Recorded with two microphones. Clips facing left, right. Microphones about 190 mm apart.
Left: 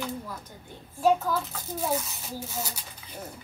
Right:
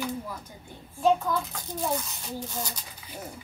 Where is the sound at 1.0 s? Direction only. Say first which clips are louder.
Even; 5° left (ahead or behind).